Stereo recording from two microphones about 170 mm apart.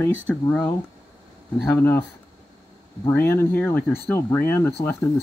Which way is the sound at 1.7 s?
10° left (ahead or behind).